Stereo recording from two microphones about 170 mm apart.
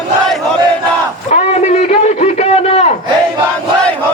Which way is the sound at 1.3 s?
40° left (ahead or behind).